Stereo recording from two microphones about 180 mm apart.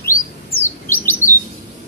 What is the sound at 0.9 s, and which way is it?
Chirp, 15° left (ahead or behind).